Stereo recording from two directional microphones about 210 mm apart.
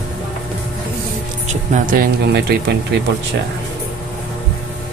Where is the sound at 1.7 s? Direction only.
40° right (ahead or behind).